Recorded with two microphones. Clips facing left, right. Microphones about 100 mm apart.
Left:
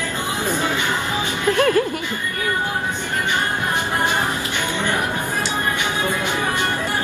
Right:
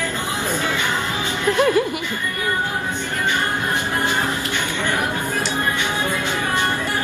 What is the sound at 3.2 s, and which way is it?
Music, 20° left (ahead or behind).